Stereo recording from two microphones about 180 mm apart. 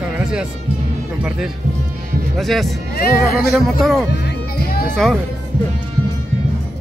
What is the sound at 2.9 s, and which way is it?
Speech, 60° left (ahead or behind).